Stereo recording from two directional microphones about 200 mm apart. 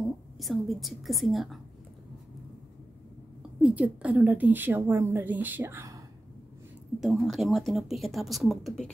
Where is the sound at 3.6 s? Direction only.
5° right (ahead or behind).